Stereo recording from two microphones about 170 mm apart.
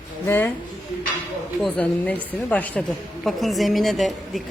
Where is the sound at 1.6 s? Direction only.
5° left (ahead or behind).